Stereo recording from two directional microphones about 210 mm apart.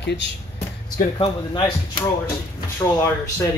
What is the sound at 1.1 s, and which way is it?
Speech, 25° left (ahead or behind).